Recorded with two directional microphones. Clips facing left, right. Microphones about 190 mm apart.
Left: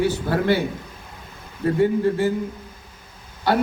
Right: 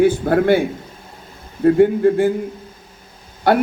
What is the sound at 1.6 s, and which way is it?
Speech, 55° right (ahead or behind).